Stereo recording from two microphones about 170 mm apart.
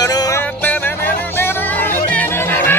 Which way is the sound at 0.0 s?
20° left (ahead or behind).